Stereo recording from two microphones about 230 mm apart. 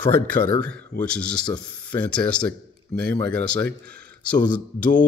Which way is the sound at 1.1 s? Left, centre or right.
Centre.